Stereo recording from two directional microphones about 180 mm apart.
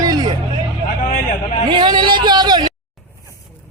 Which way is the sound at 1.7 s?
25° right (ahead or behind).